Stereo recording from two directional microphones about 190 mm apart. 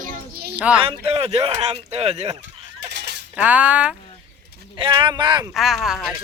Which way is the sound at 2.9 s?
65° right (ahead or behind).